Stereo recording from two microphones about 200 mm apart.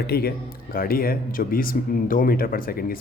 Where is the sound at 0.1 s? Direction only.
50° left (ahead or behind).